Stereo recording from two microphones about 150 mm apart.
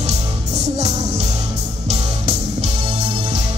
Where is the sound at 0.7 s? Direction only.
50° right (ahead or behind).